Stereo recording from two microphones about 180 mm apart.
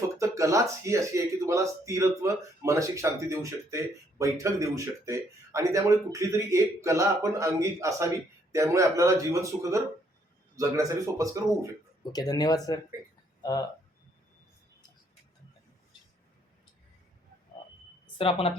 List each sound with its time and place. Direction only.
0.2 s speech: 15° right (ahead or behind)
12.1 s speech: 20° left (ahead or behind)
18.0 s a sound: 30° left (ahead or behind)